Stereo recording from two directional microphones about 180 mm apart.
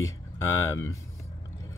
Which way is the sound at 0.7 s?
15° left (ahead or behind).